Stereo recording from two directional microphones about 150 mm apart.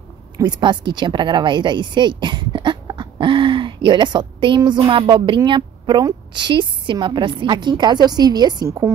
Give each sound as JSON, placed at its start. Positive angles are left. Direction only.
{"t": 0.4, "sound": "a woman's voice", "side_deg": -30}